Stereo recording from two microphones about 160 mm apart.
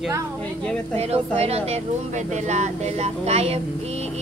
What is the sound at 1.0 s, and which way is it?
Speech, 40° right (ahead or behind).